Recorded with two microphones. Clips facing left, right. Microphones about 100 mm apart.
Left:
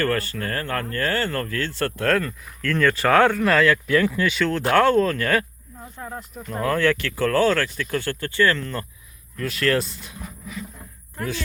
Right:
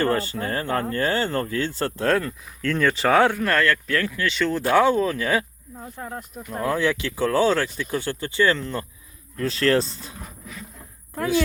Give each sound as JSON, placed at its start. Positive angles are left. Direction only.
{"t": 0.0, "sound": "speech", "side_deg": -20}
{"t": 3.4, "sound": "speech", "side_deg": 5}
{"t": 4.4, "sound": "speech", "side_deg": 0}
{"t": 6.0, "sound": "speech", "side_deg": 0}
{"t": 9.4, "sound": "speech", "side_deg": -30}